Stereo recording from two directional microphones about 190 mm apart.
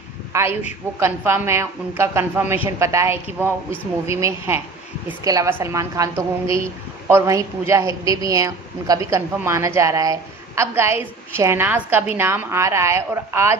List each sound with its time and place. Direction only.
0.3 s a woman's voice: 15° right (ahead or behind)
6.4 s speech: 30° left (ahead or behind)
7.1 s a woman's voice: 15° right (ahead or behind)